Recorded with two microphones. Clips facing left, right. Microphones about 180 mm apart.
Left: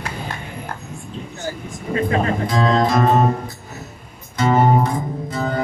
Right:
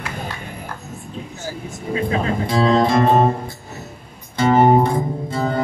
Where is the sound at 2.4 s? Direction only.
30° right (ahead or behind).